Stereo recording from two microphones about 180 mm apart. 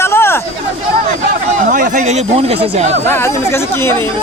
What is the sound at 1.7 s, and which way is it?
Speech, 45° right (ahead or behind).